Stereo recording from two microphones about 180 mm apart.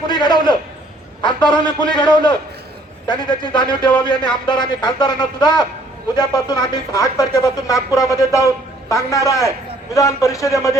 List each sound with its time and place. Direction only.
0.1 s a man's voice: 25° left (ahead or behind)